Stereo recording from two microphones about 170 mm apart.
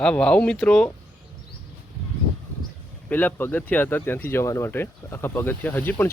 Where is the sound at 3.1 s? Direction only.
10° left (ahead or behind).